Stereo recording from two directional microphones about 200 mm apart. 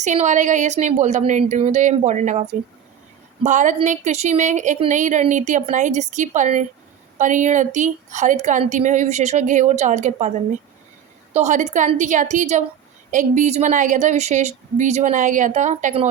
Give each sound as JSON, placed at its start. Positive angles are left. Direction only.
{"t": 0.0, "sound": "a woman's voice", "side_deg": -35}
{"t": 3.4, "sound": "a woman's voice", "side_deg": -40}
{"t": 11.3, "sound": "a woman's voice", "side_deg": -35}